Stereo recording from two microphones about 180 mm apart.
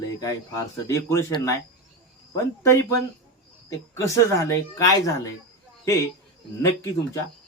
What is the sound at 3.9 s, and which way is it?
Speech, 20° left (ahead or behind).